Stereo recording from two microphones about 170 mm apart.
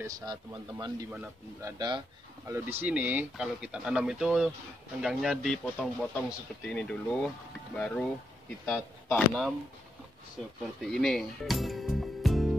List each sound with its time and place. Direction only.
0.0 s a man's voice: 25° right (ahead or behind)
2.4 s speech: 15° right (ahead or behind); by 9.4 s 10° left (ahead or behind)
10.8 s speech: centre (ahead or behind)